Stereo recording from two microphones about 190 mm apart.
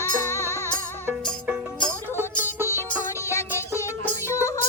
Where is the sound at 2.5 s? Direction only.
10° right (ahead or behind).